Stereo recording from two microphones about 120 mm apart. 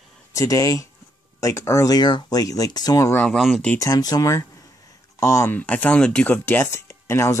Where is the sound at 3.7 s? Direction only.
30° left (ahead or behind).